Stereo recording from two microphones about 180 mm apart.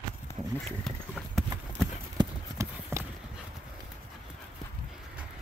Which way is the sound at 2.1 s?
15° right (ahead or behind).